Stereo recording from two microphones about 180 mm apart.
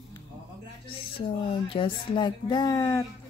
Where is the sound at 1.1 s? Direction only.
30° left (ahead or behind).